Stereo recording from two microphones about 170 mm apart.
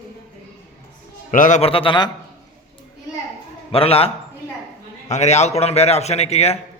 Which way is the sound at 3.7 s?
35° left (ahead or behind).